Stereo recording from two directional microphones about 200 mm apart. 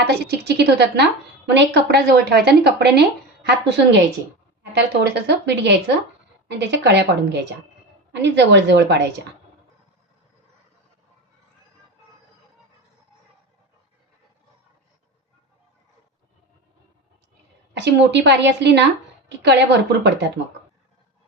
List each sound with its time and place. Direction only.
0.1 s speech: 55° right (ahead or behind)
17.7 s speech: 60° right (ahead or behind)